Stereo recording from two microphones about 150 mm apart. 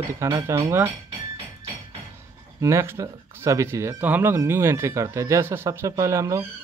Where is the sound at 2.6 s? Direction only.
20° right (ahead or behind).